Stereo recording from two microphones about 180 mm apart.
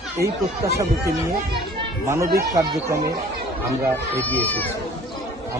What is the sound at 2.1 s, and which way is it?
Speech, 15° right (ahead or behind).